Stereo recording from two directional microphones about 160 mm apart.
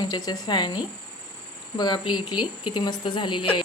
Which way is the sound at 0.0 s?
25° left (ahead or behind).